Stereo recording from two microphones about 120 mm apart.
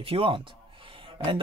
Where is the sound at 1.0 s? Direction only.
45° right (ahead or behind).